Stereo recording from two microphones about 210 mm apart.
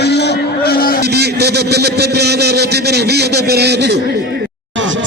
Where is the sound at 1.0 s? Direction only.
50° right (ahead or behind).